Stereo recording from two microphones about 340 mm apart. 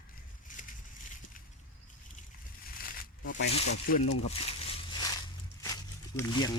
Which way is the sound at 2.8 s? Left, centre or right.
Left.